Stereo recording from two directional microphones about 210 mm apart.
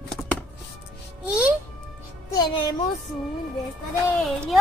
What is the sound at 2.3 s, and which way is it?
Music, 20° left (ahead or behind).